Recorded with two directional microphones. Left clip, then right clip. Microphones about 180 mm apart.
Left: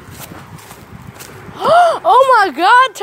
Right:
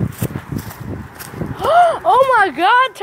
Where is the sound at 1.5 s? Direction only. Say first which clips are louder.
Left 2 dB; 25° left (ahead or behind).